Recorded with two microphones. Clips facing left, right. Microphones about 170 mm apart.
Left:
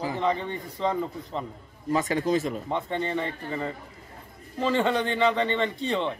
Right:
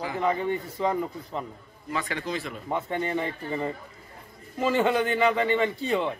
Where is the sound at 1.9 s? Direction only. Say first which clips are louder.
Left 7 dB; 40° left (ahead or behind).